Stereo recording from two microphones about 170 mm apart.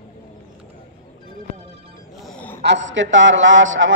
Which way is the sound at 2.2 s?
5° left (ahead or behind).